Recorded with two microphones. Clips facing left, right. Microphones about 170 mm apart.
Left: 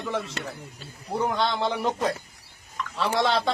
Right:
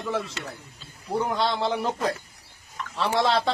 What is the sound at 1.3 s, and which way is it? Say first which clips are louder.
A woman's voice: even; centre (ahead or behind).